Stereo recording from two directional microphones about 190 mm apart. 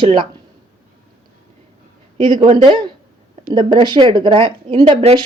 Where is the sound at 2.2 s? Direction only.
25° right (ahead or behind).